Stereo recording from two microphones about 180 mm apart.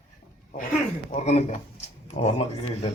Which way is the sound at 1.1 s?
35° left (ahead or behind).